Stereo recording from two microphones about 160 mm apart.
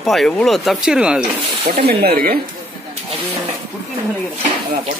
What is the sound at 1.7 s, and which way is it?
Speech, 75° right (ahead or behind).